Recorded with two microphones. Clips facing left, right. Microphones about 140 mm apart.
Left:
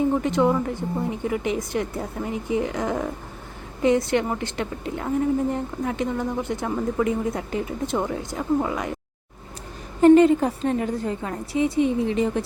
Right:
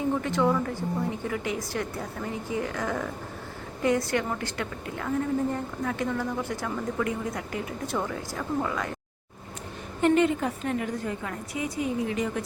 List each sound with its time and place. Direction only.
0.2 s a woman's voice: 20° left (ahead or behind)
10.0 s a woman's voice: 35° left (ahead or behind)